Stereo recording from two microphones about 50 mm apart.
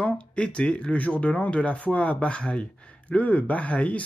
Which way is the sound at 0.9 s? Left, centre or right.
Left.